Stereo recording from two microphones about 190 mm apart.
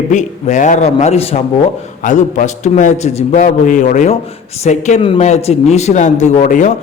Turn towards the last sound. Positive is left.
turn(degrees=40)  # may be behind; listen again after turning